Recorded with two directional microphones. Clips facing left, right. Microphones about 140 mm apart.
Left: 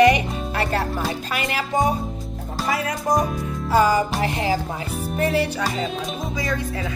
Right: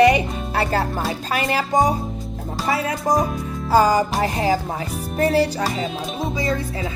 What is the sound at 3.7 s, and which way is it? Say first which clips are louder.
Music: right 2 dB; 35° right (ahead or behind).